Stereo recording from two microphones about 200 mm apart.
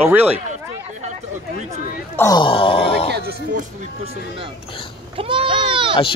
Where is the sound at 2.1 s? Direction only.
20° left (ahead or behind).